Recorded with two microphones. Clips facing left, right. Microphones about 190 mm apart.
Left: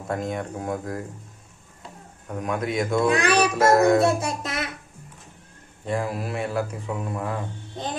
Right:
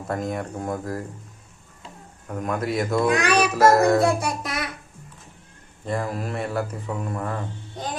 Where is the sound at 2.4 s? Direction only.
Centre (ahead or behind).